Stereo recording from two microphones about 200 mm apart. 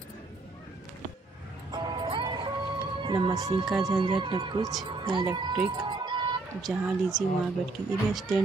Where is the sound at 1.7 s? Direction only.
25° right (ahead or behind).